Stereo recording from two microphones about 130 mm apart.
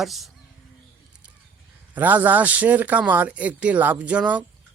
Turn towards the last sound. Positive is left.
turn(degrees=-10)  # may be behind; listen again after turning